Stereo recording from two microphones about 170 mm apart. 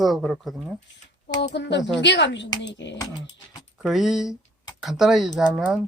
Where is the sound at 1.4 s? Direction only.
85° left.